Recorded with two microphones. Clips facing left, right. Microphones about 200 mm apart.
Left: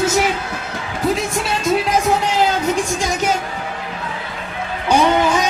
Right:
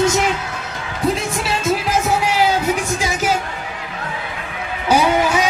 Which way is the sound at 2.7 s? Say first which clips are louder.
Left 1 dB; 5° right (ahead or behind).